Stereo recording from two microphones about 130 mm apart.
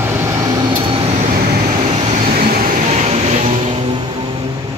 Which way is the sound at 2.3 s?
90° right.